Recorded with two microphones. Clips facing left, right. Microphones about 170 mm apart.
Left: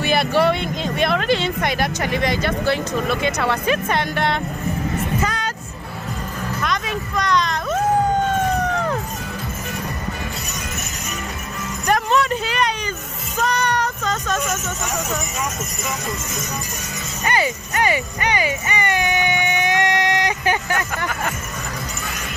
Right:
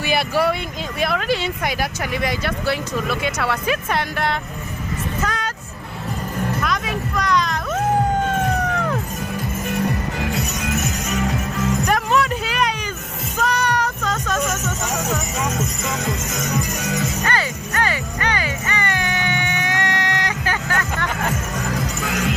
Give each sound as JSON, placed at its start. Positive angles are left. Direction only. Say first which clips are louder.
{"t": 0.0, "sound": "speech", "louder": "left 2 dB", "side_deg": -5}
{"t": 5.2, "sound": "music", "louder": "left 1 dB", "side_deg": 0}
{"t": 6.6, "sound": "speech", "louder": "right 1 dB", "side_deg": -5}
{"t": 11.8, "sound": "a sound", "louder": "left 3 dB", "side_deg": -5}
{"t": 13.4, "sound": "child singing", "louder": "even", "side_deg": -5}
{"t": 17.2, "sound": "music", "louder": "left 2 dB", "side_deg": 15}
{"t": 22.0, "sound": "music", "louder": "right 8 dB", "side_deg": -90}